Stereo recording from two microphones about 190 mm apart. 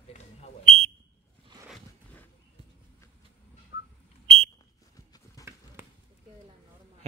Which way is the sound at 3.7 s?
15° right (ahead or behind).